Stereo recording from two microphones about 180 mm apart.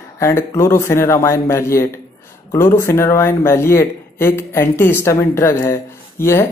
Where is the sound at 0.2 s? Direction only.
15° left (ahead or behind).